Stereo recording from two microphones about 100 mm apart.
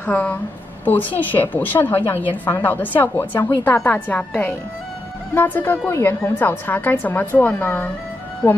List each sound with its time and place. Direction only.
0.0 s a woman's voice: 15° left (ahead or behind)
5.3 s a woman's voice: 20° left (ahead or behind)